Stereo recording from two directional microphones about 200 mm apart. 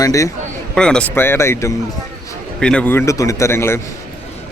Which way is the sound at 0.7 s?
5° left (ahead or behind).